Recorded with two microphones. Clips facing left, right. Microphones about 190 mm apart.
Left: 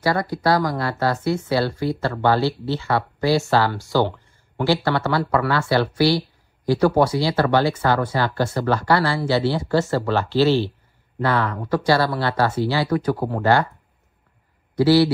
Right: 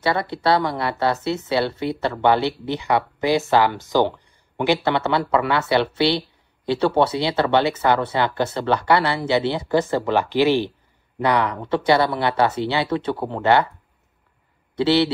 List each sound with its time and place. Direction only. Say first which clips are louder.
0.0 s speech: left 1 dB; 25° right (ahead or behind)
14.8 s speech: left 3 dB; 25° right (ahead or behind)